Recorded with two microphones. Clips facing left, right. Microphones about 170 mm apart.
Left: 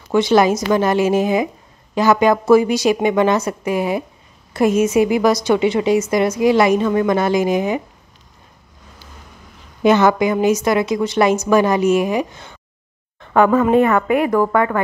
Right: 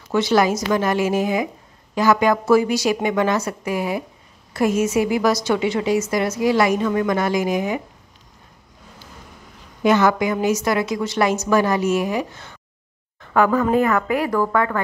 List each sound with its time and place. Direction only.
0.1 s a woman's voice: 20° left (ahead or behind)
9.8 s a woman's voice: 25° left (ahead or behind)